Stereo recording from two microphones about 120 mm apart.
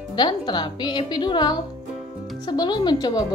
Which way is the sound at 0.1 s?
35° left (ahead or behind).